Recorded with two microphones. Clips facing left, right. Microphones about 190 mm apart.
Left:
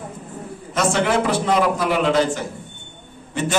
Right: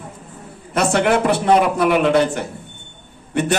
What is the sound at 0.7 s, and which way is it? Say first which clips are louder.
A man's voice: right 3 dB; 60° right (ahead or behind).